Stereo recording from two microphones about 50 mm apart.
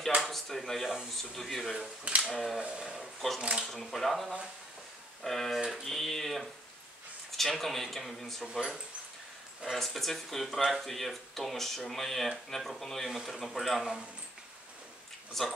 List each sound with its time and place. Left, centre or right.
0.2 s speech: centre
2.0 s speech: centre
2.3 s speech: centre
2.6 s speech: centre
3.0 s speech: centre
3.3 s speech: centre
3.6 s speech: centre
5.6 s speech: centre
9.8 s speech: centre
15.4 s speech: centre